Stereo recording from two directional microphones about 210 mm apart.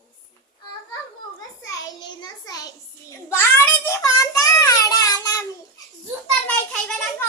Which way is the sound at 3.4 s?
10° left (ahead or behind).